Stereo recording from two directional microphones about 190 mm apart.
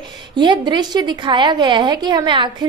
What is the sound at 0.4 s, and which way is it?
A woman's voice, 25° right (ahead or behind).